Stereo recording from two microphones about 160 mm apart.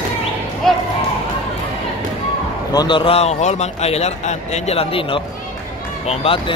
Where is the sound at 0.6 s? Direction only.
Centre (ahead or behind).